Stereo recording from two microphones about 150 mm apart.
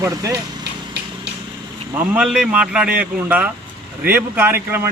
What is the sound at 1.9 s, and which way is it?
Speech, 10° right (ahead or behind).